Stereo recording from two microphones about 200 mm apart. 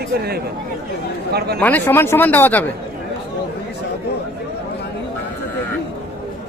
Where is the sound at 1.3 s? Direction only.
55° right (ahead or behind).